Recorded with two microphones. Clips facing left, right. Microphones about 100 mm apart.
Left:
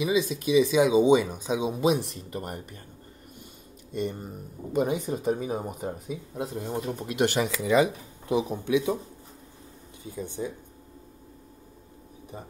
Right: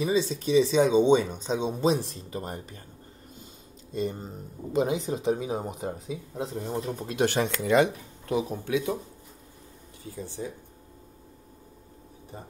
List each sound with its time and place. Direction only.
0.1 s speech: 5° left (ahead or behind)
4.2 s speech: 10° left (ahead or behind)
8.3 s speech: 20° left (ahead or behind)
10.2 s speech: 20° left (ahead or behind)